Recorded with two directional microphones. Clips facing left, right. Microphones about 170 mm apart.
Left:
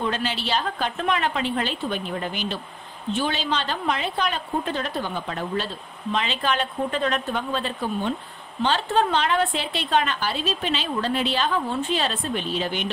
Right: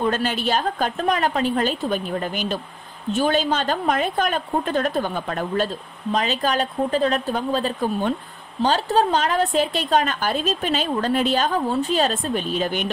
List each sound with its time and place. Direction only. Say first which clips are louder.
0.0 s a woman's voice: right 5 dB; 50° right (ahead or behind)